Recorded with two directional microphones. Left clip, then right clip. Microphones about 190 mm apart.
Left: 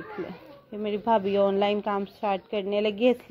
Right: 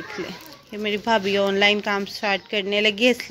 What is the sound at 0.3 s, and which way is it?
Speech, 5° left (ahead or behind).